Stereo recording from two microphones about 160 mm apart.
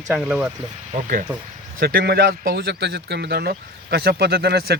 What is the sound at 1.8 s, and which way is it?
Speech, 70° right (ahead or behind).